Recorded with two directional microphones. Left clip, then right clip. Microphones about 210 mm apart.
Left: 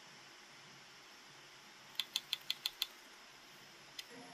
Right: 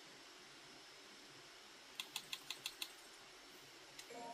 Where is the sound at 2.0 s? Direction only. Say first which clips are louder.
Left 8 dB; 50° left (ahead or behind).